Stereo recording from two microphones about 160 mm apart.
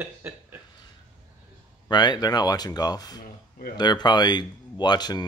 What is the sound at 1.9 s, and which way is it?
Speech, 25° left (ahead or behind).